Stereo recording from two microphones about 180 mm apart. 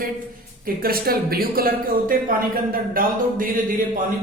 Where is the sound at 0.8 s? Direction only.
55° right (ahead or behind).